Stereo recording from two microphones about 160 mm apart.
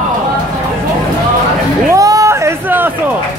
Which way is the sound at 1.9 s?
20° right (ahead or behind).